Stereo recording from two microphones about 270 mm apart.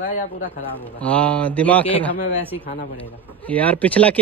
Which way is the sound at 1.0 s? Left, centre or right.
Centre.